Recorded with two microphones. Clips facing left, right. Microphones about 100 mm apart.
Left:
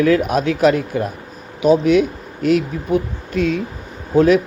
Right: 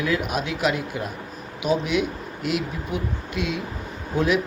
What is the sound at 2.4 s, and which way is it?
Speech, 40° left (ahead or behind).